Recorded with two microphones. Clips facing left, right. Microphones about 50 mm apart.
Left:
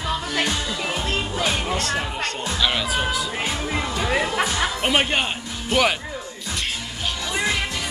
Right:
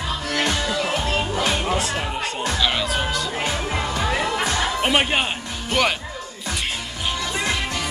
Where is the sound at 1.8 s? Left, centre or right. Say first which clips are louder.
Even; centre.